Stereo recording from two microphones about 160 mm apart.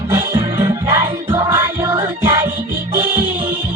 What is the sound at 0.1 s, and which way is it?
Music, 15° right (ahead or behind).